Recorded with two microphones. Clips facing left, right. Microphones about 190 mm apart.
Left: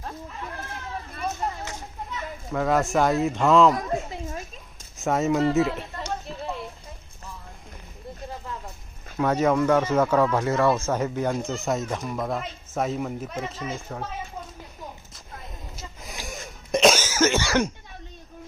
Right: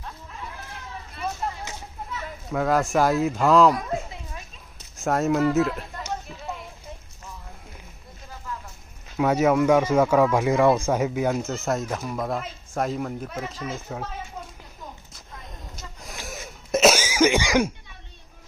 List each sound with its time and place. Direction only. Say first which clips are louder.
2.0 s speech: even; 5° right (ahead or behind)
4.3 s a sound: left 6 dB; 45° left (ahead or behind)
4.9 s speech: even; centre (ahead or behind)
9.1 s speech: right 2 dB; 10° right (ahead or behind)
15.7 s a sound: left 1 dB; centre (ahead or behind)
16.2 s cough: right 1 dB; 5° right (ahead or behind)